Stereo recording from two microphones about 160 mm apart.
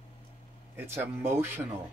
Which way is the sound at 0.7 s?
15° right (ahead or behind).